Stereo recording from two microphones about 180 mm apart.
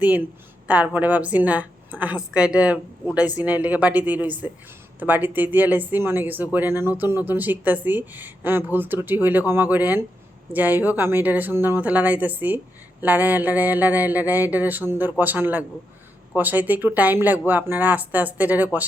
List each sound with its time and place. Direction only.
0.0 s speech: 10° right (ahead or behind)